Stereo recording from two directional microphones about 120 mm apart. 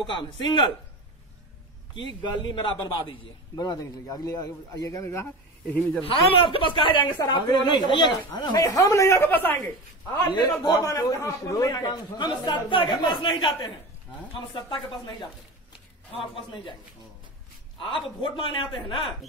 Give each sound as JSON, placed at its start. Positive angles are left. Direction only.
{"t": 0.0, "sound": "a man's voice", "side_deg": 40}
{"t": 2.2, "sound": "a man's voice", "side_deg": 40}
{"t": 6.0, "sound": "a man's voice", "side_deg": 50}
{"t": 7.2, "sound": "speech", "side_deg": 30}
{"t": 10.3, "sound": "a man's voice", "side_deg": 35}
{"t": 17.7, "sound": "a man's voice", "side_deg": 45}